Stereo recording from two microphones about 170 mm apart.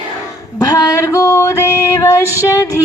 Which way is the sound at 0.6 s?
20° left (ahead or behind).